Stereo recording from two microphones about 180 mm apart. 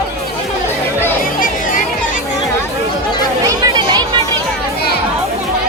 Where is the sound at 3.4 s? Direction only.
20° right (ahead or behind).